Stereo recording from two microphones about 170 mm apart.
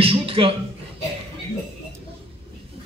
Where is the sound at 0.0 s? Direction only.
35° right (ahead or behind).